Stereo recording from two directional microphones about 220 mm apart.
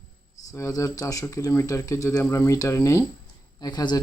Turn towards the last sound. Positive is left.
turn(degrees=20)  # may be behind; listen again after turning